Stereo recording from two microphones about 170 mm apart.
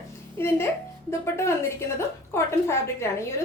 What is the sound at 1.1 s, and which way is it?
A woman's voice, 15° left (ahead or behind).